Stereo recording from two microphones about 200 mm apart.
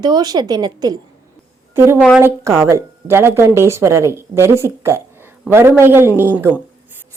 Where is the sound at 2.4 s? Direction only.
15° right (ahead or behind).